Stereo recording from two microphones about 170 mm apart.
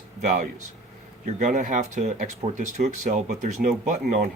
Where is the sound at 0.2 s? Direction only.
45° right (ahead or behind).